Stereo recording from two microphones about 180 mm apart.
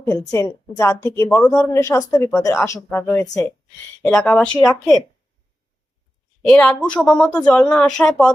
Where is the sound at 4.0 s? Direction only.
5° left (ahead or behind).